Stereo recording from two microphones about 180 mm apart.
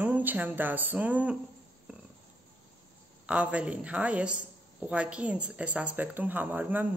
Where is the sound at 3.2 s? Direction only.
5° right (ahead or behind).